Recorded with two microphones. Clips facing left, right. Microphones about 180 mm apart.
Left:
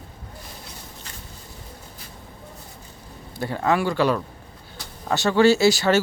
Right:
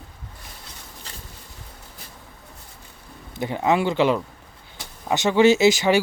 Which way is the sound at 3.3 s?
15° right (ahead or behind).